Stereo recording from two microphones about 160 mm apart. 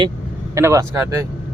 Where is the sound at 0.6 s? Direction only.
15° right (ahead or behind).